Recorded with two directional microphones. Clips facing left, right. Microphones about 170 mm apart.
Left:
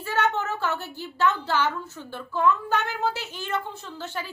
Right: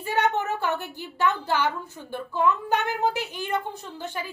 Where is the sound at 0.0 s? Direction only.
15° right (ahead or behind).